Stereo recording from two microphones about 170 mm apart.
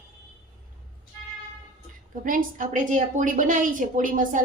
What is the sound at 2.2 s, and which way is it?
A woman's voice, 50° right (ahead or behind).